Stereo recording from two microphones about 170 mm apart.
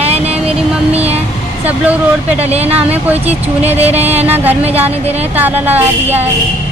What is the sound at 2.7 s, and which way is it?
Speech, 10° right (ahead or behind).